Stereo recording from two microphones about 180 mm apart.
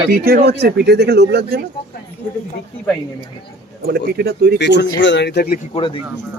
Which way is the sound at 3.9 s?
60° right (ahead or behind).